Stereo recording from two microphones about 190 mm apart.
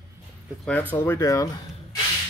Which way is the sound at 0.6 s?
10° left (ahead or behind).